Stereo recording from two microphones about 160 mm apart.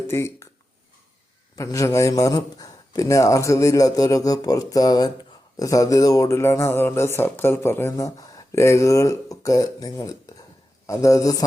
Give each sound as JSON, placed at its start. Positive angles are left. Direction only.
{"t": 0.1, "sound": "speech", "side_deg": 15}
{"t": 1.5, "sound": "a man's voice", "side_deg": 20}